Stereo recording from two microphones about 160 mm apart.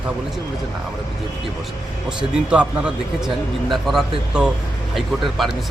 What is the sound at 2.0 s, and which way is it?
Speech, 5° right (ahead or behind).